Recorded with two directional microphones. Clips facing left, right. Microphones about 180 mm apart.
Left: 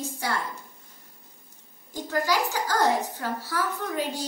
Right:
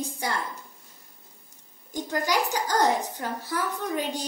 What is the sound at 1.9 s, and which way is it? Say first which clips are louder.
A child's voice: left 1 dB; 15° right (ahead or behind).